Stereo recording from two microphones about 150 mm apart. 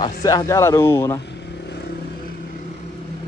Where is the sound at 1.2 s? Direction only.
90° left.